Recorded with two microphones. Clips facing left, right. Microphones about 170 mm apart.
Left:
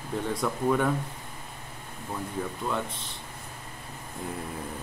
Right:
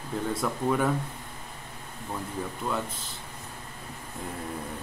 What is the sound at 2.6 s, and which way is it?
Speech, centre (ahead or behind).